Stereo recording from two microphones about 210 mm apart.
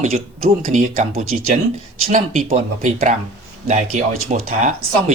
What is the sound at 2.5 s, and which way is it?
Speech, 35° right (ahead or behind).